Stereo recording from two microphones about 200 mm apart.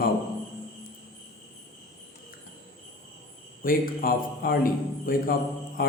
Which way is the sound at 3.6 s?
45° left (ahead or behind).